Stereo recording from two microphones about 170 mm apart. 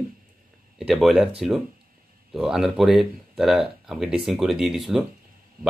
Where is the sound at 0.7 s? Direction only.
Centre (ahead or behind).